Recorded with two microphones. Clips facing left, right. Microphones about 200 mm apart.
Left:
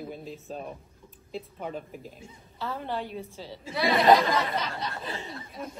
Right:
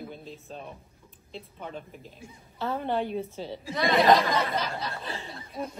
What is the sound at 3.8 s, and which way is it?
Speech, centre (ahead or behind).